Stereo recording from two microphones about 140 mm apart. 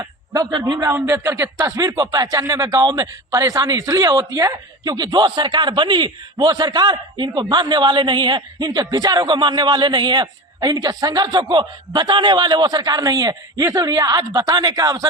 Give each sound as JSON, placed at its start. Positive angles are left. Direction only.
{"t": 0.0, "sound": "a man's voice", "side_deg": -25}